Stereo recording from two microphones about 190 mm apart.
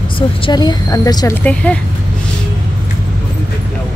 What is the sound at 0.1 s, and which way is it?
Speech, 25° left (ahead or behind).